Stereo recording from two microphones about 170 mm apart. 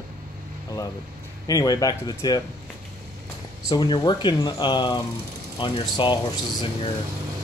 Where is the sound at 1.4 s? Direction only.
20° left (ahead or behind).